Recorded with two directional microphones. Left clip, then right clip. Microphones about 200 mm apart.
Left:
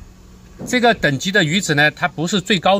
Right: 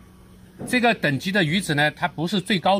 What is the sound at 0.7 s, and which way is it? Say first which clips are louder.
Speech: left 5 dB; 30° left (ahead or behind).